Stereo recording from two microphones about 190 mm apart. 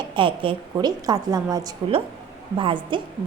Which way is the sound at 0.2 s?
25° right (ahead or behind).